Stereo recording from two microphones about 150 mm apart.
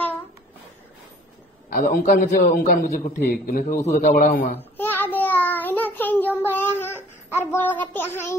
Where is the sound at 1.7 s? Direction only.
75° left (ahead or behind).